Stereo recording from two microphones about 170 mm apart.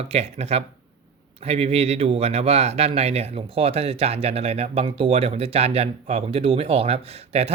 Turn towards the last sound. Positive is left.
turn(degrees=-35)  # may be behind; listen again after turning